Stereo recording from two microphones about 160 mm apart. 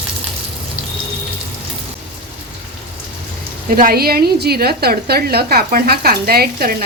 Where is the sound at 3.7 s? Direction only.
65° right (ahead or behind).